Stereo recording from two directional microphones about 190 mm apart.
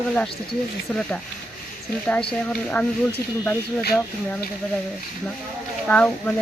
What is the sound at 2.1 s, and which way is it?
Speech, 5° left (ahead or behind).